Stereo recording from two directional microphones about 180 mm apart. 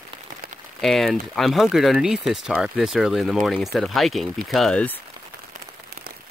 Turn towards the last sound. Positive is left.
turn(degrees=5)  # may be behind; listen again after turning